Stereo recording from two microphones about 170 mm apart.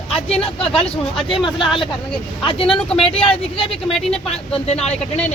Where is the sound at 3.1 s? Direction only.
35° left (ahead or behind).